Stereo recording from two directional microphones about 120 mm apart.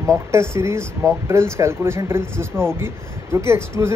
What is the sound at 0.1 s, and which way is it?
Speech, 25° right (ahead or behind).